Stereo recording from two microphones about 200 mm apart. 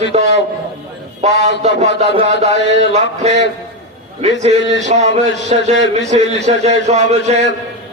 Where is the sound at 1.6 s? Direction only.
30° right (ahead or behind).